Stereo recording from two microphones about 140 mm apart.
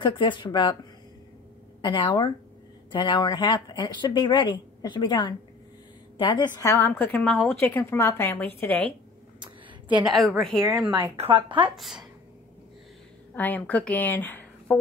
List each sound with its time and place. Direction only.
0.0 s speech: 35° left (ahead or behind)
1.8 s a woman's voice: 35° left (ahead or behind)
6.6 s a woman's voice: 20° left (ahead or behind)
9.4 s a sound: 35° right (ahead or behind)
10.0 s a woman's voice: centre (ahead or behind)
11.1 s a woman's voice: 35° right (ahead or behind)
11.7 s a woman's voice: centre (ahead or behind)
13.3 s a woman's voice: 10° left (ahead or behind)